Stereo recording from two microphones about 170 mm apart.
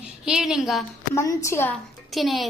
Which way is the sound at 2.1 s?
Centre (ahead or behind).